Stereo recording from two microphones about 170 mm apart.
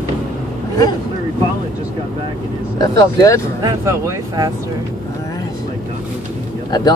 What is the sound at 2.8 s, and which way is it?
Speech, 20° left (ahead or behind).